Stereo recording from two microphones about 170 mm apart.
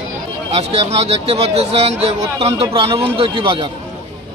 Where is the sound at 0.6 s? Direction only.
40° right (ahead or behind).